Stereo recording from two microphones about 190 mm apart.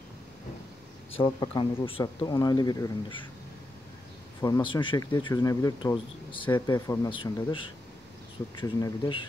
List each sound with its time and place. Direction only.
1.1 s speech: 25° left (ahead or behind)
4.4 s speech: 20° left (ahead or behind)